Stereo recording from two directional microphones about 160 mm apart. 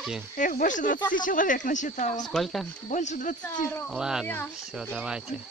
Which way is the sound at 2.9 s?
50° left (ahead or behind).